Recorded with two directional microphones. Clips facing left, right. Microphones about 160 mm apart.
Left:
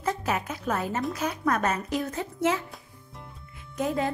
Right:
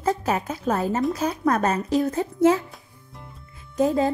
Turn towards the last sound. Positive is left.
turn(degrees=-30)  # may be behind; listen again after turning